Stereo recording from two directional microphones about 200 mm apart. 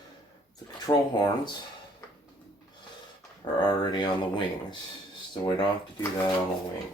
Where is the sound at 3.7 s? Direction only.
25° left (ahead or behind).